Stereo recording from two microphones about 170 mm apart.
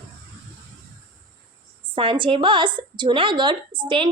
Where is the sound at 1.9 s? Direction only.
30° right (ahead or behind).